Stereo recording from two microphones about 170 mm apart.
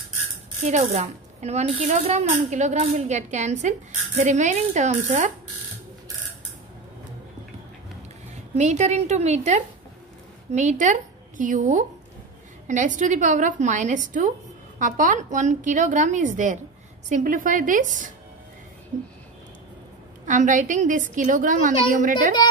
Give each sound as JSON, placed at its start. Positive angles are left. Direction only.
{"t": 0.7, "sound": "a woman's voice", "side_deg": -40}
{"t": 8.5, "sound": "a woman's voice", "side_deg": -40}
{"t": 20.2, "sound": "a woman's voice", "side_deg": -45}